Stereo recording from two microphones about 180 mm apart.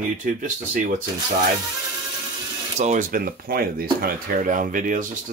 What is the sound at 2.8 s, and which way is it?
Speech, 45° right (ahead or behind).